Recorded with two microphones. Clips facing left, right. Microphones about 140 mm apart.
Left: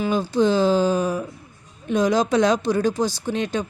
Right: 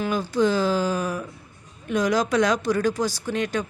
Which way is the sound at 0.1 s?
25° left (ahead or behind).